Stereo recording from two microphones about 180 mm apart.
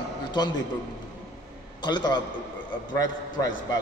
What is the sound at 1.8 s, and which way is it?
Speech, 25° left (ahead or behind).